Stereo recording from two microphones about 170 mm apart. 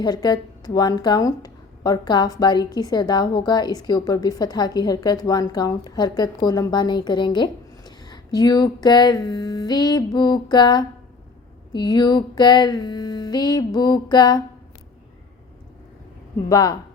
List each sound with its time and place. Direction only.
0.0 s a woman's voice: 25° left (ahead or behind)
16.5 s a woman's voice: 20° left (ahead or behind)